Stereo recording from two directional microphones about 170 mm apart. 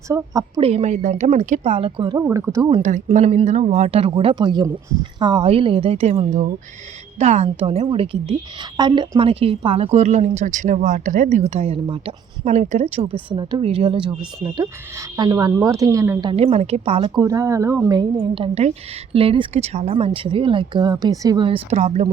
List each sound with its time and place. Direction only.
0.1 s a woman's voice: 20° right (ahead or behind)
0.6 s a woman's voice: 40° right (ahead or behind)
2.1 s speech: 15° right (ahead or behind)
2.8 s a woman's voice: 45° right (ahead or behind)
13.3 s a woman's voice: 25° right (ahead or behind)
16.3 s a woman's voice: 35° right (ahead or behind)
17.2 s a woman's voice: 20° right (ahead or behind); by 22.1 s 40° right (ahead or behind)